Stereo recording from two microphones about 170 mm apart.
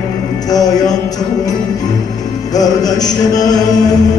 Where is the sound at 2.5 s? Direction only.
20° left (ahead or behind).